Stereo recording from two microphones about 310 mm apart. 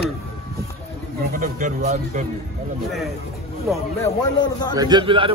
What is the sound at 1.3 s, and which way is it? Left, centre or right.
Speech, right.